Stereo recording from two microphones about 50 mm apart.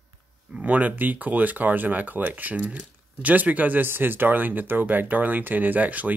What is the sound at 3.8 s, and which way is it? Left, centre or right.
Speech, right.